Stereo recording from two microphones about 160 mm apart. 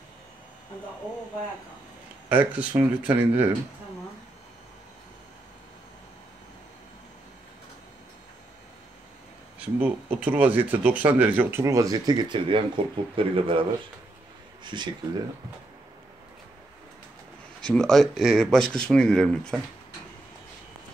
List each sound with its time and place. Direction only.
2.2 s speech: 10° right (ahead or behind)
9.6 s speech: 10° right (ahead or behind); by 14.9 s 30° right (ahead or behind)
17.6 s speech: 5° left (ahead or behind)